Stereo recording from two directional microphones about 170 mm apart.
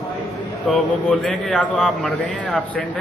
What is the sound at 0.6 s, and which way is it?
A man's voice, 10° left (ahead or behind).